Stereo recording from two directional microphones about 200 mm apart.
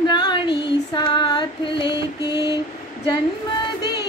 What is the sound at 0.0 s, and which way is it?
Female singing, 20° left (ahead or behind).